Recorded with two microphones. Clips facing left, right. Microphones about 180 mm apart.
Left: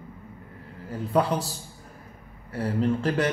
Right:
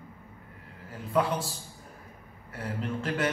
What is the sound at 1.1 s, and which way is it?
Speech, 40° left (ahead or behind).